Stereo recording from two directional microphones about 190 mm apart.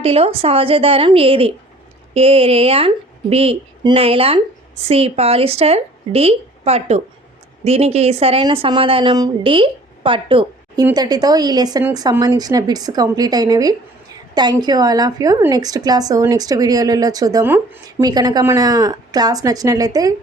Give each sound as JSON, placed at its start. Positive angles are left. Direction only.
{"t": 0.0, "sound": "a woman's voice", "side_deg": -30}